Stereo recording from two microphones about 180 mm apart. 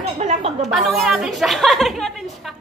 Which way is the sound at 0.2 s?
40° right (ahead or behind).